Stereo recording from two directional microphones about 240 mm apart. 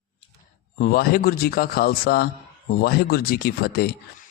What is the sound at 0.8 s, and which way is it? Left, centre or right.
Speech, left.